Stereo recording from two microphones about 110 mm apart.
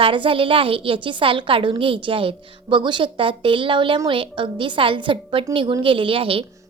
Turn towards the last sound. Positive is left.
turn(degrees=-55)  # may be behind; listen again after turning